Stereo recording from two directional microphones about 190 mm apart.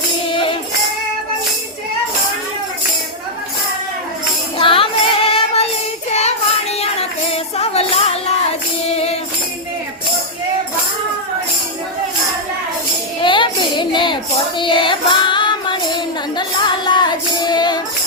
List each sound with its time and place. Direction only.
4.5 s female singing: 30° left (ahead or behind)
6.1 s child singing: 35° left (ahead or behind)
7.3 s music: 30° left (ahead or behind)
13.2 s child singing: 25° left (ahead or behind)
14.6 s music: 25° left (ahead or behind)
17.4 s child singing: 20° left (ahead or behind)